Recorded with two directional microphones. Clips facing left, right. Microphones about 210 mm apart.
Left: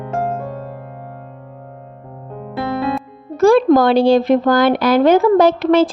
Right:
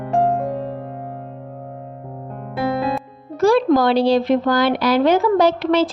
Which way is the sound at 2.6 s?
Centre (ahead or behind).